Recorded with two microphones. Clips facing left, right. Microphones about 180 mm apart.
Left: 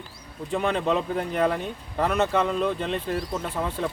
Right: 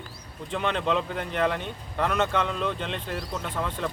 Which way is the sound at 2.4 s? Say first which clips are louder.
Left 4 dB; 40° left (ahead or behind).